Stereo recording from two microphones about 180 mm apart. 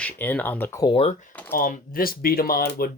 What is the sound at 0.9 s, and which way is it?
Speech, 40° left (ahead or behind).